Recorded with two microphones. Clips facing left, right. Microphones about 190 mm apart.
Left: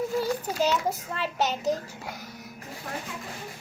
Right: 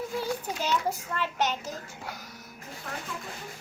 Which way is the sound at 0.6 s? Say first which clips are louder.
Left 4 dB; 35° left (ahead or behind).